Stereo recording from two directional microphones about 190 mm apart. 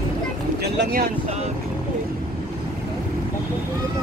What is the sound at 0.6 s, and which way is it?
Vehicle, 60° right (ahead or behind).